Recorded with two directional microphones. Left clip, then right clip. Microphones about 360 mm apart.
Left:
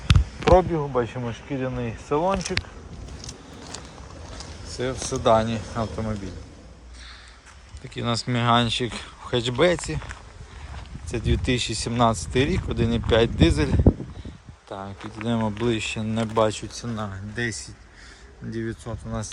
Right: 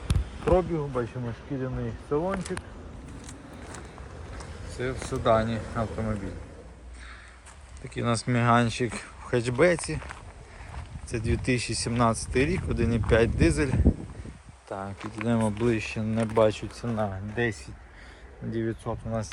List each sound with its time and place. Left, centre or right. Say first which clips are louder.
0.5 s speech: left 7 dB; left
4.8 s speech: left 5 dB; centre
7.9 s speech: left 1 dB; centre